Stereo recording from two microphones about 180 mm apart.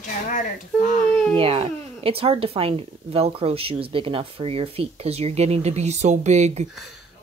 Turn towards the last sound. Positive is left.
turn(degrees=-40)  # may be behind; listen again after turning